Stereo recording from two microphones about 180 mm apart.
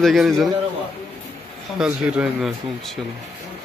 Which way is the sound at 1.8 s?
5° right (ahead or behind).